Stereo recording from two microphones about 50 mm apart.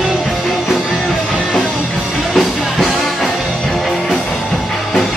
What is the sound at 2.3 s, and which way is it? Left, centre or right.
Music, centre.